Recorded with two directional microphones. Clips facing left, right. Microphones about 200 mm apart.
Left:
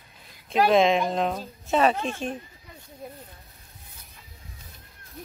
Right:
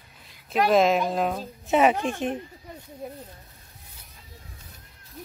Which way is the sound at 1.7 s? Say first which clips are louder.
Right 2 dB; 15° right (ahead or behind).